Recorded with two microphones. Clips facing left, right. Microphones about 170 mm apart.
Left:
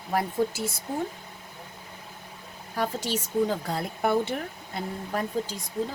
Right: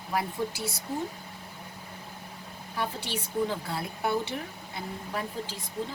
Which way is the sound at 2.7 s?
45° left (ahead or behind).